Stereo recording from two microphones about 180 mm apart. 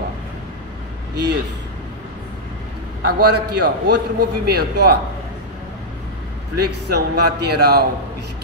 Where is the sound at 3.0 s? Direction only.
65° right (ahead or behind).